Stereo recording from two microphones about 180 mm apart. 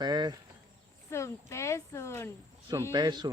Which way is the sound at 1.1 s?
15° left (ahead or behind).